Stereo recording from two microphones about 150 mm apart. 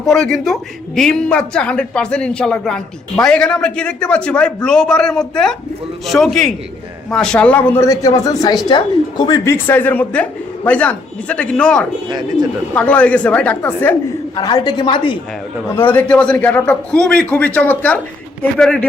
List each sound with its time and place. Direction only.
0.0 s a man's voice: 5° left (ahead or behind)
14.3 s a woman's voice: 25° left (ahead or behind)
15.9 s a woman's voice: 10° left (ahead or behind)